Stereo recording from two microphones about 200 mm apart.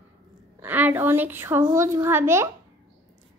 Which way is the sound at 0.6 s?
10° right (ahead or behind).